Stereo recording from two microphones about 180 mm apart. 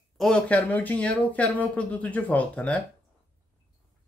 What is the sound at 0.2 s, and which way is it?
Speech, 5° left (ahead or behind).